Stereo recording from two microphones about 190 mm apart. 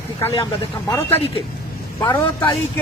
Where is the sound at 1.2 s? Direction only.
30° left (ahead or behind).